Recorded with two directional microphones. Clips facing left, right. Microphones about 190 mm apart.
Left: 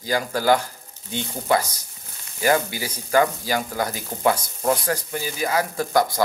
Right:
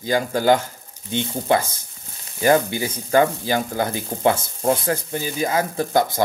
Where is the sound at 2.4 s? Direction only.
25° right (ahead or behind).